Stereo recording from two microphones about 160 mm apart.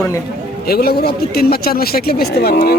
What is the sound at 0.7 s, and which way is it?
Speech, 70° left (ahead or behind).